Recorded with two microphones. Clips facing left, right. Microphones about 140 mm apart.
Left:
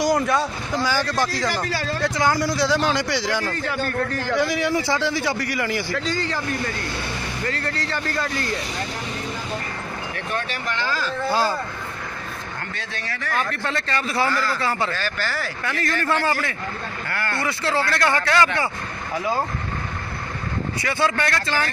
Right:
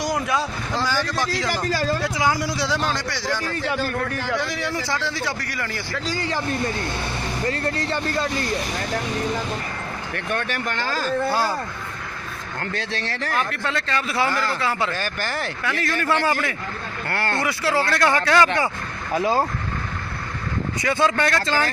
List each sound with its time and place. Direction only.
0.0 s a man's voice: centre (ahead or behind)
2.0 s speech: 5° right (ahead or behind)
3.0 s a man's voice: 15° left (ahead or behind)
4.1 s a man's voice: centre (ahead or behind)
5.9 s speech: 10° right (ahead or behind)
10.1 s speech: 55° right (ahead or behind)
13.7 s speech: centre (ahead or behind)
14.9 s speech: 15° right (ahead or behind)
17.1 s speech: 30° right (ahead or behind)
17.4 s speech: 10° right (ahead or behind)
20.8 s speech: 20° right (ahead or behind)